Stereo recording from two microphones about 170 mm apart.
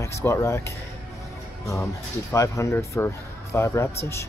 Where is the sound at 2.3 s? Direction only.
15° left (ahead or behind).